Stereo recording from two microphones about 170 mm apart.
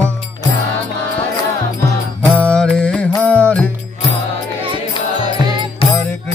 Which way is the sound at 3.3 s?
10° left (ahead or behind).